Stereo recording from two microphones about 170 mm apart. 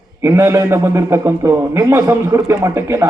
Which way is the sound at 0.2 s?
15° right (ahead or behind).